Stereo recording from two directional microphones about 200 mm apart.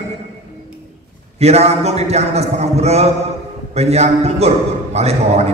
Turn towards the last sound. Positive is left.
turn(degrees=-30)  # may be behind; listen again after turning